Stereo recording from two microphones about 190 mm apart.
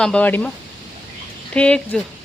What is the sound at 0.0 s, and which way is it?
Speech, 5° left (ahead or behind).